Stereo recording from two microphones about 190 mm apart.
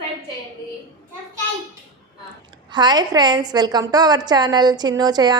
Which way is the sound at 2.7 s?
20° right (ahead or behind).